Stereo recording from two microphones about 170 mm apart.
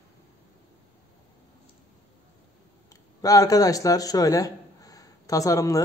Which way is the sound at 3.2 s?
20° left (ahead or behind).